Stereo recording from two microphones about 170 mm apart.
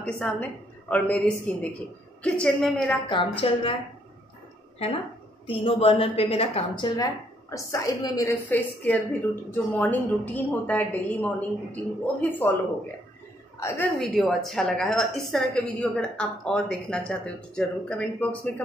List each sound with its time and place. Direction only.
0.0 s a woman's voice: 10° left (ahead or behind)
3.1 s a woman's voice: 30° left (ahead or behind)
5.5 s a woman's voice: 35° left (ahead or behind); by 12.5 s 10° left (ahead or behind)
13.6 s a woman's voice: 15° left (ahead or behind)
13.9 s a woman's voice: centre (ahead or behind)